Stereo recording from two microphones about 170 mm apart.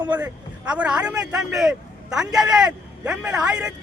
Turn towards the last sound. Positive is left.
turn(degrees=-5)  # may be behind; listen again after turning